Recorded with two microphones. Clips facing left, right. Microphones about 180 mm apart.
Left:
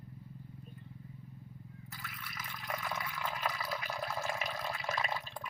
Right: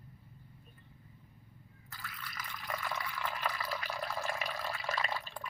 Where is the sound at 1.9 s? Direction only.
5° left (ahead or behind).